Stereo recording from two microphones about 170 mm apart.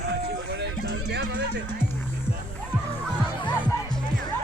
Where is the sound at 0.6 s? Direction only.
75° right (ahead or behind).